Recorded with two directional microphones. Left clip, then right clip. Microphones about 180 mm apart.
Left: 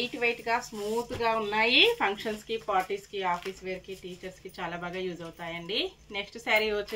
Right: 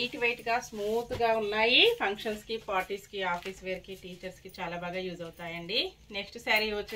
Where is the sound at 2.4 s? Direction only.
15° left (ahead or behind).